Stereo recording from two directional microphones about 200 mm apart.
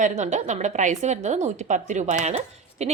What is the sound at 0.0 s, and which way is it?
A woman's voice, 35° right (ahead or behind).